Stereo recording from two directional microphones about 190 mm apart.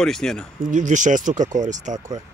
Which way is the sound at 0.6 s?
40° right (ahead or behind).